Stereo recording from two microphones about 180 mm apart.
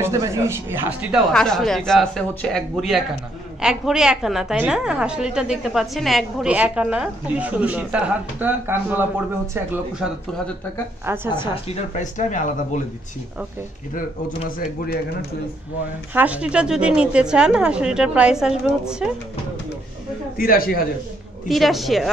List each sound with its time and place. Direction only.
0.0 s a man's voice: 15° right (ahead or behind)
1.3 s a woman's voice: 5° left (ahead or behind)
11.1 s a man's voice: 15° right (ahead or behind)
11.4 s speech: 35° left (ahead or behind)
16.2 s a woman's voice: 5° right (ahead or behind)
20.3 s a man's voice: 55° left (ahead or behind)
21.5 s a woman's voice: centre (ahead or behind)